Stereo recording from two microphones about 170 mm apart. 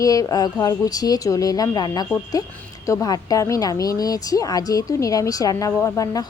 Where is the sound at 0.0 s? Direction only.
20° left (ahead or behind).